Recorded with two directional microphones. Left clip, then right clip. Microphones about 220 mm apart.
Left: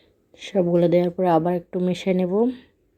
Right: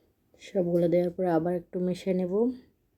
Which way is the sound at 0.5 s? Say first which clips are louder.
Left 6 dB; 15° left (ahead or behind).